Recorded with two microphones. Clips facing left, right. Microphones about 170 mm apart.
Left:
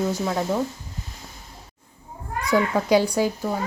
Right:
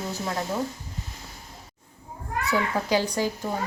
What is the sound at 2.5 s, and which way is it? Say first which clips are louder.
Speech: left 6 dB; 10° left (ahead or behind).